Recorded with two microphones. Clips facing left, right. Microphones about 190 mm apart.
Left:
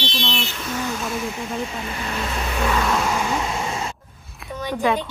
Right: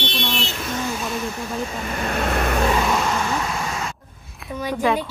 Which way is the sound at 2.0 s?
55° right (ahead or behind).